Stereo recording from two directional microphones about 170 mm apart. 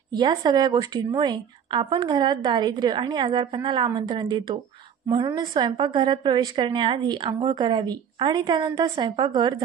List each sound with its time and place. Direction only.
0.1 s a woman's voice: 25° right (ahead or behind)